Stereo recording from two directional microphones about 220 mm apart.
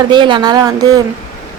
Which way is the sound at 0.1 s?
20° right (ahead or behind).